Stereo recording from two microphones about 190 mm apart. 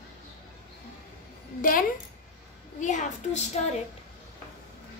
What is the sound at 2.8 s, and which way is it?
Speech, 40° left (ahead or behind).